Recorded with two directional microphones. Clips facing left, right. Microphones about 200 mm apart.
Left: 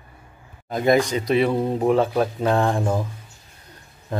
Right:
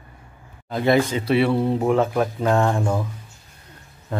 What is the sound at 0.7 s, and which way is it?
Speech, 15° left (ahead or behind).